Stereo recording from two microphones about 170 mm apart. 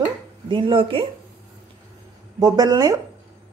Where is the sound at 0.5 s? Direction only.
30° right (ahead or behind).